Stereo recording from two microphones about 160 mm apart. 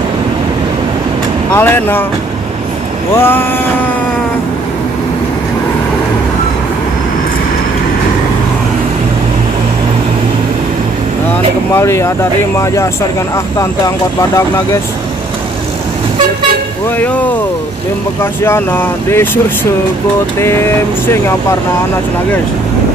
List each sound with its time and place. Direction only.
1.5 s speech: 15° left (ahead or behind)
3.2 s speech: 15° left (ahead or behind)
11.7 s speech: 15° left (ahead or behind)
17.0 s speech: 10° left (ahead or behind)
20.3 s speech: 15° left (ahead or behind)